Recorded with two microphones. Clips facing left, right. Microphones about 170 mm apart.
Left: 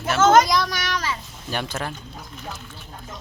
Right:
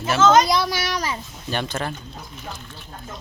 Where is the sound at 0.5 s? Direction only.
5° right (ahead or behind).